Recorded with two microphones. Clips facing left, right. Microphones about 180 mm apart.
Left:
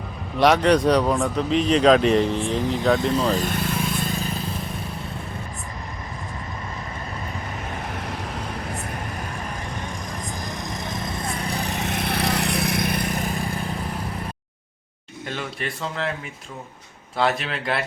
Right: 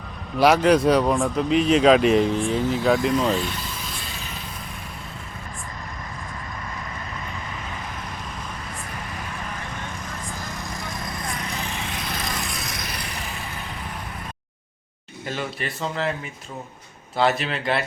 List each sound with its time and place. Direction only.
0.3 s speech: 5° right (ahead or behind)
3.2 s vehicle: 40° left (ahead or behind)
7.7 s vehicle: 60° left (ahead or behind)
10.3 s vehicle: 20° left (ahead or behind); by 11.8 s 35° left (ahead or behind)
11.8 s vehicle: 55° left (ahead or behind)
15.3 s speech: centre (ahead or behind)
17.2 s speech: centre (ahead or behind)